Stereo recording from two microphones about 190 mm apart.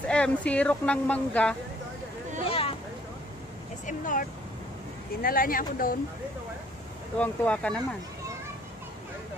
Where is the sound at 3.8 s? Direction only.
45° left (ahead or behind).